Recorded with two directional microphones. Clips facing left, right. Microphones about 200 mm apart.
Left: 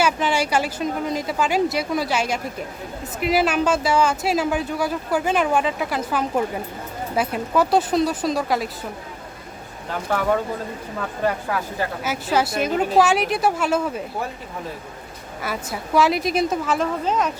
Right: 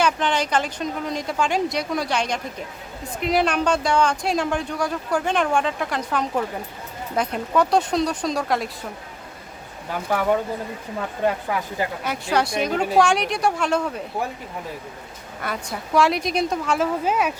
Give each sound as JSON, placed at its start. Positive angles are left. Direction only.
{"t": 0.0, "sound": "speech", "side_deg": 5}
{"t": 11.2, "sound": "speech", "side_deg": -20}
{"t": 12.0, "sound": "speech", "side_deg": 5}
{"t": 15.4, "sound": "speech", "side_deg": 5}